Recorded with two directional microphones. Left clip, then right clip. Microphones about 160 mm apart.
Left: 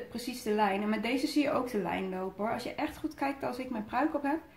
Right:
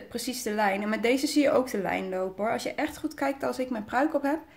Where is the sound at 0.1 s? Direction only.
45° right (ahead or behind).